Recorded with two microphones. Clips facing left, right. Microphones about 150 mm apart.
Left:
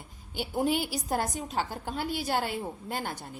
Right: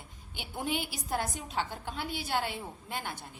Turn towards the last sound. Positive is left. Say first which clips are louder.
# left 5 dB
turn(degrees=45)  # may be behind; listen again after turning